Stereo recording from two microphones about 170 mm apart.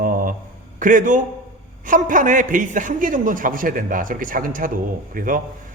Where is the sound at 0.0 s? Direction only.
55° right (ahead or behind).